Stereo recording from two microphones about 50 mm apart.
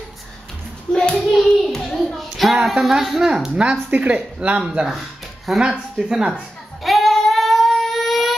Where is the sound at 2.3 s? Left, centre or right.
Centre.